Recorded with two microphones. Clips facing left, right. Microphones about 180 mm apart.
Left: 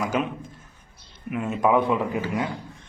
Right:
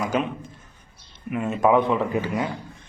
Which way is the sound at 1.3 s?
Centre (ahead or behind).